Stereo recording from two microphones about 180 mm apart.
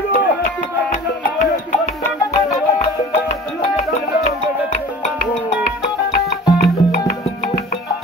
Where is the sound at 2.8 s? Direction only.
35° left (ahead or behind).